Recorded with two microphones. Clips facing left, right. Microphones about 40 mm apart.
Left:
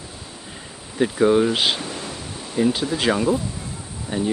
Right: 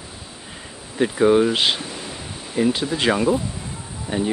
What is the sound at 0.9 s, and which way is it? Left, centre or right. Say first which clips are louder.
Speech: right 1 dB; centre.